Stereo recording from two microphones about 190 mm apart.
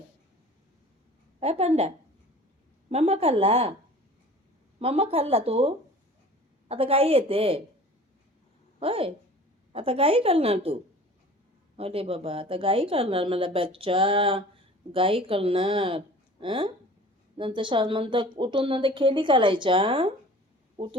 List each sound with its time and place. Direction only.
1.4 s a woman's voice: 30° right (ahead or behind)
2.9 s a woman's voice: 35° right (ahead or behind)
4.8 s a woman's voice: 30° right (ahead or behind)
8.8 s a woman's voice: 30° right (ahead or behind)
11.8 s a woman's voice: 30° right (ahead or behind)